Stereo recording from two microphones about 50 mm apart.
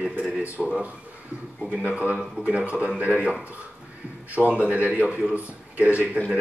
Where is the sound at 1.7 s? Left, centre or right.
Right.